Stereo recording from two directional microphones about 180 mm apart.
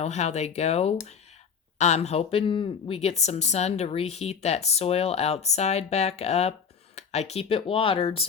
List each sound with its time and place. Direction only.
0.0 s speech: 40° left (ahead or behind)